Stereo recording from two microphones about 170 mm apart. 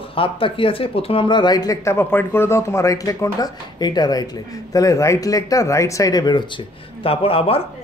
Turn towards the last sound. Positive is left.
turn(degrees=35)  # may be behind; listen again after turning